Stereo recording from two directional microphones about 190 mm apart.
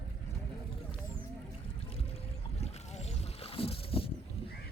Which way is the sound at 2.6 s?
35° left (ahead or behind).